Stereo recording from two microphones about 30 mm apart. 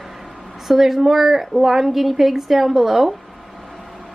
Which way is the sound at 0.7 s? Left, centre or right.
Centre.